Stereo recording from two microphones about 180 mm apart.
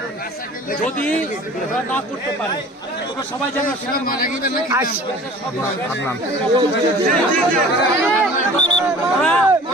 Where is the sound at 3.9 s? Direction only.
55° left (ahead or behind).